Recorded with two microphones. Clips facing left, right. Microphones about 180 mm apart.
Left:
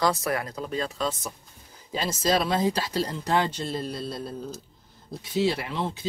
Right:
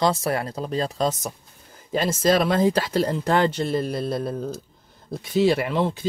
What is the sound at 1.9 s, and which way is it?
Speech, 50° right (ahead or behind).